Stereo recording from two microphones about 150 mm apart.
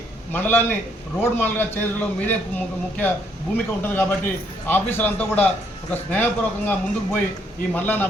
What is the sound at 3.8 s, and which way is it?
A man's voice, 15° left (ahead or behind).